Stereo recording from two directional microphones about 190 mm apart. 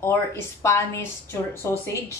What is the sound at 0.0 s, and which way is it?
A woman's voice, 10° left (ahead or behind).